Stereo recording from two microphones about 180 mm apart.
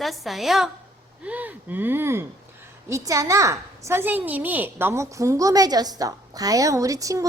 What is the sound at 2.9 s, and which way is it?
A woman's voice, 20° right (ahead or behind).